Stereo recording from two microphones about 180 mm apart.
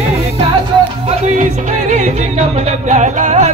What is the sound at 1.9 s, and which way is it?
Music, 40° right (ahead or behind).